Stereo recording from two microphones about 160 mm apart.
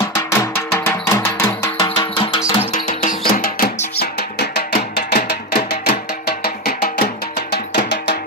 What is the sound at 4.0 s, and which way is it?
Music, 85° left.